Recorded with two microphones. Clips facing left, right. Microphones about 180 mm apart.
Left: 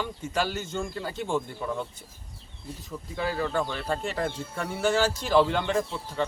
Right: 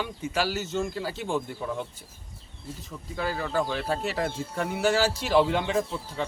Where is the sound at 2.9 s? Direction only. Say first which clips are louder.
Left 1 dB; centre (ahead or behind).